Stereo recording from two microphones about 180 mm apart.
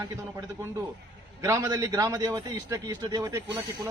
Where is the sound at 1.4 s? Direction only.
20° right (ahead or behind).